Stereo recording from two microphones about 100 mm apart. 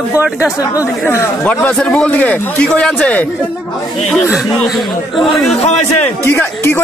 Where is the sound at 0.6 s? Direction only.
35° left (ahead or behind).